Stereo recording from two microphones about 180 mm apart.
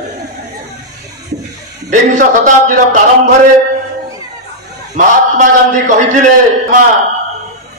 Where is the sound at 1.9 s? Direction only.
45° right (ahead or behind).